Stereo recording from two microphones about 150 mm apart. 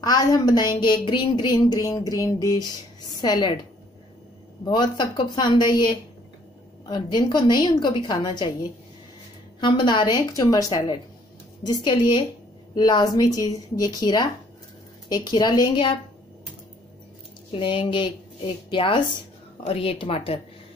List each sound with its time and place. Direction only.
0.0 s a woman's voice: 25° left (ahead or behind)
4.6 s a woman's voice: 30° left (ahead or behind)
9.6 s a woman's voice: 30° left (ahead or behind)
17.5 s a woman's voice: 35° left (ahead or behind)